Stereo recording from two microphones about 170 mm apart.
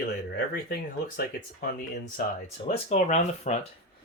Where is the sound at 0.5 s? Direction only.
70° left (ahead or behind).